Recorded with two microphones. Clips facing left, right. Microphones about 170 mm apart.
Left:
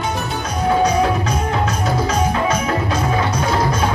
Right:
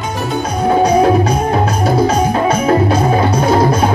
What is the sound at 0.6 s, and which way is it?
Music, 35° right (ahead or behind).